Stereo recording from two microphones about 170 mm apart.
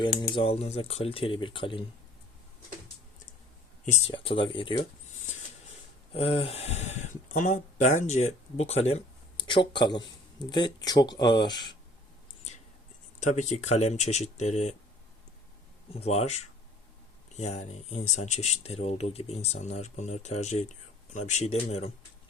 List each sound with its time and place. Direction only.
0.2 s speech: 30° left (ahead or behind)
3.9 s speech: 35° left (ahead or behind)
6.1 s speech: 35° left (ahead or behind)
13.1 s speech: 45° left (ahead or behind)
15.9 s speech: 35° left (ahead or behind)